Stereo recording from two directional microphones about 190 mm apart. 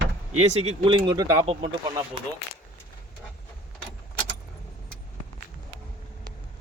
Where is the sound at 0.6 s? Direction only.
30° right (ahead or behind).